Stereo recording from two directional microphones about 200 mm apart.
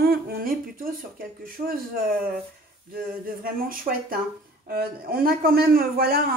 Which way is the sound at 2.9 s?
45° right (ahead or behind).